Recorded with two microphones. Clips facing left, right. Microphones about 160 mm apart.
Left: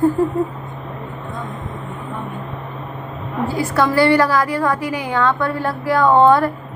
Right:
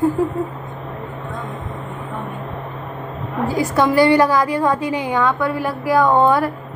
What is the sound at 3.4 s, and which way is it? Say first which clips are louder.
A woman's voice: right 1 dB; 15° right (ahead or behind).